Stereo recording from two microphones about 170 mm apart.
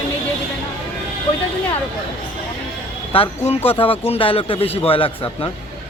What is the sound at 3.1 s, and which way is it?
A man's voice, 35° left (ahead or behind).